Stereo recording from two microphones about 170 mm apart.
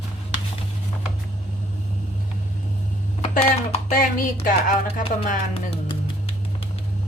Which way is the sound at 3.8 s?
45° left (ahead or behind).